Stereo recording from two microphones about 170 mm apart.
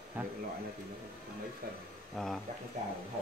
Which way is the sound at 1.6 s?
60° right (ahead or behind).